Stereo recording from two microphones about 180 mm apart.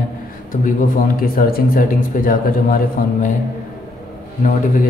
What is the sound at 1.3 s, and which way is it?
A man's voice, 55° left (ahead or behind).